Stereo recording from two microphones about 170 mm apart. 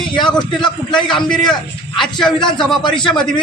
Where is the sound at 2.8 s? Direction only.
25° left (ahead or behind).